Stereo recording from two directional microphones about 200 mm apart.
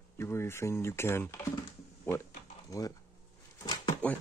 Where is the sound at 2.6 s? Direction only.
15° left (ahead or behind).